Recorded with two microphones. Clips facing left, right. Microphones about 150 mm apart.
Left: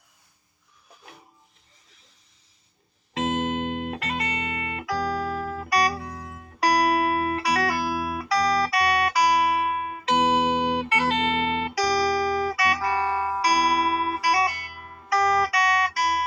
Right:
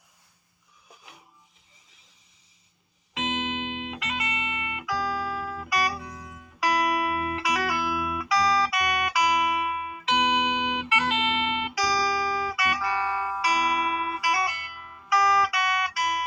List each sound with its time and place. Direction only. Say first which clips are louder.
3.2 s music: left 5 dB; 45° left (ahead or behind)
5.1 s music: left 3 dB; 50° left (ahead or behind); by 11.7 s 35° left (ahead or behind)
11.8 s music: left 4 dB; 60° left (ahead or behind)
12.5 s music: left 3 dB; 40° left (ahead or behind)
15.4 s guitar: left 3 dB; 35° left (ahead or behind)